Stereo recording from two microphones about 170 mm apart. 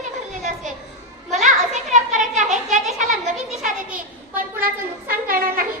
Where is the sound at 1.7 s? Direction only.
45° right (ahead or behind).